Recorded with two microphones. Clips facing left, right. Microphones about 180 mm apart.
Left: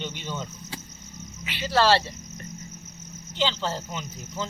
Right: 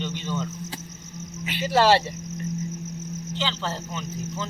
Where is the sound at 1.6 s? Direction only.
15° right (ahead or behind).